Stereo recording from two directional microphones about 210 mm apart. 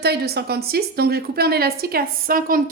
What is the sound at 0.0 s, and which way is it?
Speech, 50° right (ahead or behind).